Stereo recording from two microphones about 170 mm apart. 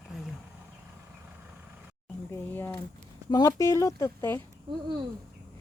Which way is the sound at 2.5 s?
10° left (ahead or behind).